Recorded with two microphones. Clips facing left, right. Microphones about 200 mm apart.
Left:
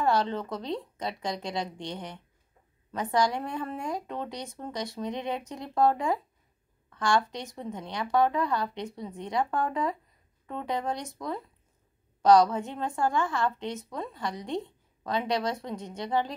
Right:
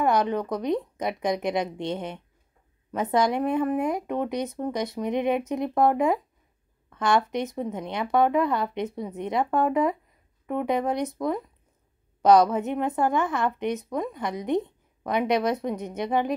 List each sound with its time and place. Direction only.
0.0 s a woman's voice: 15° right (ahead or behind)